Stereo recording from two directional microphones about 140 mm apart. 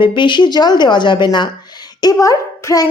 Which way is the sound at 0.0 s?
35° left (ahead or behind).